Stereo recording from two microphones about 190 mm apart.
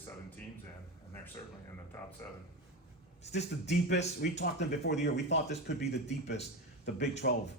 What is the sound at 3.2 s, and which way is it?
Speech, 65° left (ahead or behind).